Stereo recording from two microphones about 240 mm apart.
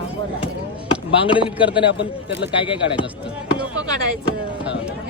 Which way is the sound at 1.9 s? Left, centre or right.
Left.